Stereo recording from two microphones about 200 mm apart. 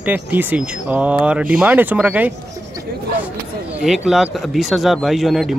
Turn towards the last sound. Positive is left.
turn(degrees=0)  # may be behind; listen again after turning